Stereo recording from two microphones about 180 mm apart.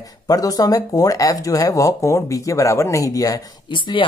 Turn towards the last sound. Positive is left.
turn(degrees=25)  # may be behind; listen again after turning